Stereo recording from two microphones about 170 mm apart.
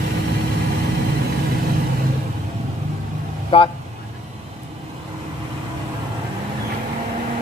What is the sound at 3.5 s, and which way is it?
Speech, 35° left (ahead or behind).